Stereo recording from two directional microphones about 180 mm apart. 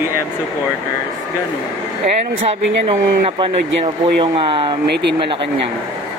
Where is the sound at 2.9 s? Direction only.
30° right (ahead or behind).